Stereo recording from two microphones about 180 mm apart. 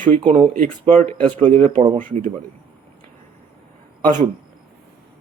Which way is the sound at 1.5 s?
35° right (ahead or behind).